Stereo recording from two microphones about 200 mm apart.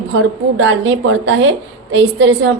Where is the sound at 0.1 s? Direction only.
70° right (ahead or behind).